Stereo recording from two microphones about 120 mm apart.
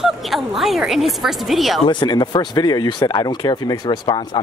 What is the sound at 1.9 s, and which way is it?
Speech, 40° left (ahead or behind).